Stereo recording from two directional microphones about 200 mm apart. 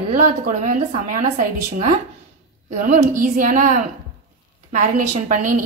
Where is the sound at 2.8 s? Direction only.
40° right (ahead or behind).